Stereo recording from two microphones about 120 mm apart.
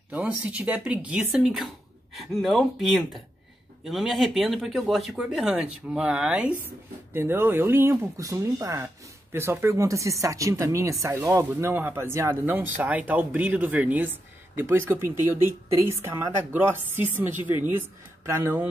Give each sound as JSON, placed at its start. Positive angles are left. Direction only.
{"t": 0.1, "sound": "speech", "side_deg": -15}
{"t": 7.2, "sound": "speech", "side_deg": -20}